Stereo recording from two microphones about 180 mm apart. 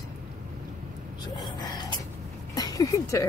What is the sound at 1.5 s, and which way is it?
Speech, 25° left (ahead or behind).